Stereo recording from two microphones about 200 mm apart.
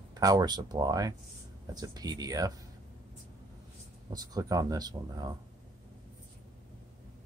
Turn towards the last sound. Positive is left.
turn(degrees=-20)  # may be behind; listen again after turning